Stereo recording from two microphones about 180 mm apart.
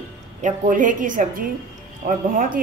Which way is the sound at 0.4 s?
45° right (ahead or behind).